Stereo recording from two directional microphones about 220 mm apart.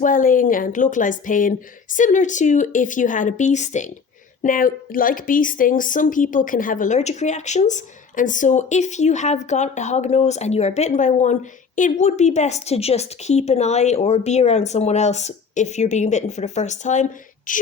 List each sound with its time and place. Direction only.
0.0 s speech: 35° left (ahead or behind)